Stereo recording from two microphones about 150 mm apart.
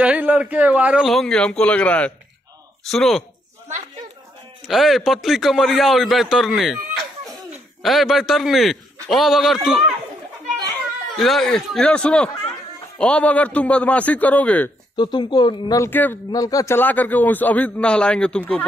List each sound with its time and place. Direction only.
0.0 s a man's voice: 10° right (ahead or behind)
4.6 s a man's voice: centre (ahead or behind)
7.8 s a man's voice: centre (ahead or behind)
11.1 s a man's voice: centre (ahead or behind)
15.0 s speech: 30° left (ahead or behind)
15.8 s a man's voice: 15° left (ahead or behind)
16.3 s a man's voice: 25° left (ahead or behind)